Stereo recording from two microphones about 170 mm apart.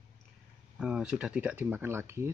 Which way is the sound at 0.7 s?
5° right (ahead or behind).